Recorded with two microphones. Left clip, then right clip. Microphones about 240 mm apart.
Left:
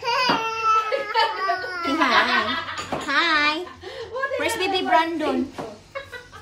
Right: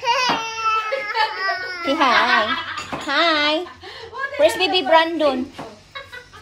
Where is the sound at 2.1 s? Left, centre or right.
Centre.